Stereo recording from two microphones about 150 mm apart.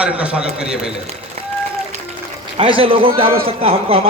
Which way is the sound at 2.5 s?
40° right (ahead or behind).